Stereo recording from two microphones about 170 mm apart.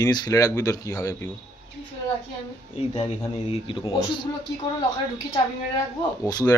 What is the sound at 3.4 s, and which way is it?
Speech, 30° left (ahead or behind).